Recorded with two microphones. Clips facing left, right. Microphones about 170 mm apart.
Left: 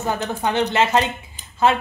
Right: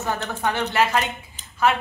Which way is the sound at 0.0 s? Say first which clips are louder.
Left 2 dB; 15° left (ahead or behind).